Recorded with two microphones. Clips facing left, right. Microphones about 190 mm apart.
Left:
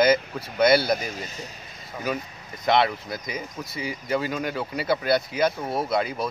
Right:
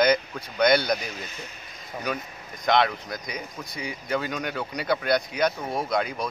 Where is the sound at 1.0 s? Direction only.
40° left (ahead or behind).